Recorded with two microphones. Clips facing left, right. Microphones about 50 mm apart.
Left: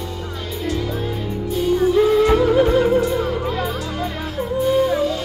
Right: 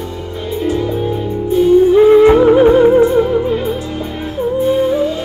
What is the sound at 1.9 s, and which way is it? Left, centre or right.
Music, right.